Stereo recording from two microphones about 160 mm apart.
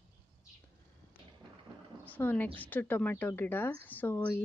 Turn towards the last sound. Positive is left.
turn(degrees=10)  # may be behind; listen again after turning